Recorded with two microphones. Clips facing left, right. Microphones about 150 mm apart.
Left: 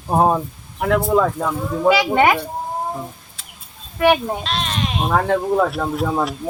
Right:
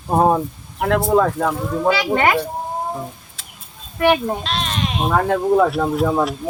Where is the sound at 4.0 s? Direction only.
Centre (ahead or behind).